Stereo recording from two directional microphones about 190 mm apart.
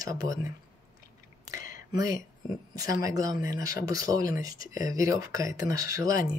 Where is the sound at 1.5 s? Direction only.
15° right (ahead or behind).